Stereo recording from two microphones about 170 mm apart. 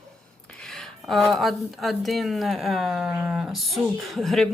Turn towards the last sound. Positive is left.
turn(degrees=0)  # may be behind; listen again after turning